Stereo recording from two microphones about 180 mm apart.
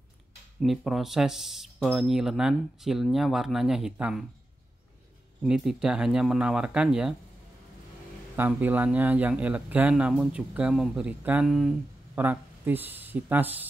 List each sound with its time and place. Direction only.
0.6 s speech: centre (ahead or behind)
5.4 s speech: centre (ahead or behind)
8.4 s speech: 10° right (ahead or behind)